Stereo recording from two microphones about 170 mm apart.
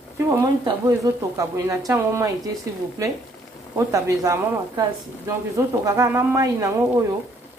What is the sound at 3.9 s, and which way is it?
Speech, 20° right (ahead or behind).